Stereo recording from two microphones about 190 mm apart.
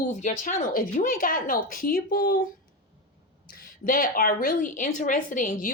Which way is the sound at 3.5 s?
50° left (ahead or behind).